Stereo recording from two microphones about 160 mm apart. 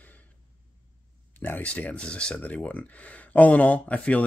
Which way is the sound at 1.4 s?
10° left (ahead or behind).